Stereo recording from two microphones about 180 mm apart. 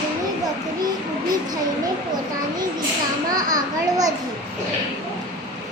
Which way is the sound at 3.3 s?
20° right (ahead or behind).